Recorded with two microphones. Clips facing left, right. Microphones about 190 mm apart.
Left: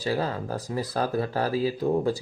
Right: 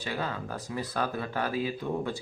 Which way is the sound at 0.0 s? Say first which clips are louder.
Left 6 dB; 35° left (ahead or behind).